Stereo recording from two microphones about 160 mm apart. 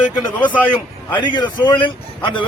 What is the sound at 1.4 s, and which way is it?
A man's voice, 30° left (ahead or behind).